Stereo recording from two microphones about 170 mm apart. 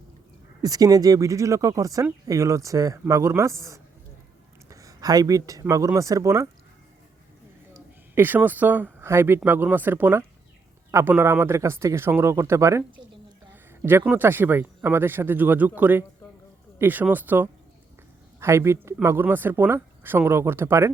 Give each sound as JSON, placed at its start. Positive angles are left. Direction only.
{"t": 0.6, "sound": "speech", "side_deg": -20}
{"t": 8.1, "sound": "speech", "side_deg": -10}